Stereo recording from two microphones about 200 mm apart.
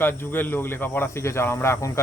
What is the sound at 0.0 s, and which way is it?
Speech, 10° left (ahead or behind).